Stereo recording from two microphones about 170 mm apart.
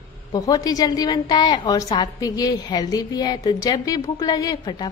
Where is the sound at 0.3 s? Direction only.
20° left (ahead or behind).